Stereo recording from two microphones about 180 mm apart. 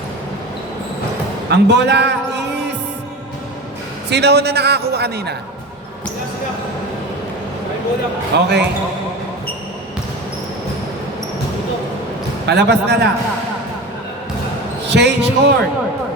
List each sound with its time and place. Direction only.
1.5 s a man's voice: 75° right (ahead or behind)
4.1 s a man's voice: 70° right (ahead or behind)
8.3 s a man's voice: 70° right (ahead or behind)
12.5 s a man's voice: 70° right (ahead or behind)
14.8 s a man's voice: 70° right (ahead or behind)